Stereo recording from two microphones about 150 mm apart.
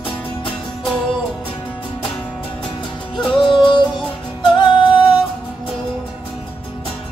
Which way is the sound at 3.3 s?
30° left (ahead or behind).